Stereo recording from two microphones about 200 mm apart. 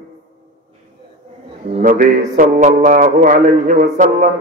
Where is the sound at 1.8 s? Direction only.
45° right (ahead or behind).